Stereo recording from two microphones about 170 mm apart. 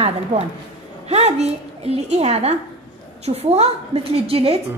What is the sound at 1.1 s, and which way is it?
A woman's voice, 40° right (ahead or behind).